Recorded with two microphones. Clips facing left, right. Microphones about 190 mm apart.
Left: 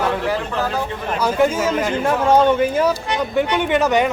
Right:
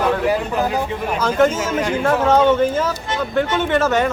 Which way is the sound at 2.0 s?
10° left (ahead or behind).